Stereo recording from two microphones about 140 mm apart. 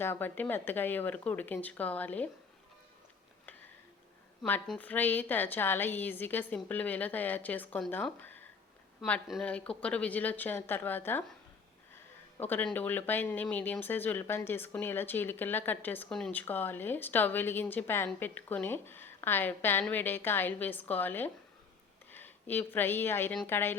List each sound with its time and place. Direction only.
0.0 s a woman's voice: 15° left (ahead or behind)
4.6 s a woman's voice: 5° left (ahead or behind)
9.2 s speech: 5° right (ahead or behind)
9.5 s a woman's voice: 10° left (ahead or behind)
12.4 s a woman's voice: 15° left (ahead or behind)